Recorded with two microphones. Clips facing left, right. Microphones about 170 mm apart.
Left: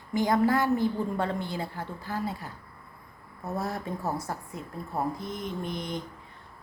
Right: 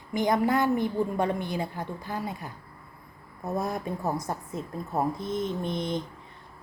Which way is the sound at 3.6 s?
15° right (ahead or behind).